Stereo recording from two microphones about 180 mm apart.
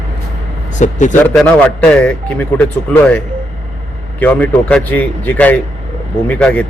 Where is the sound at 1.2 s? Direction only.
10° left (ahead or behind).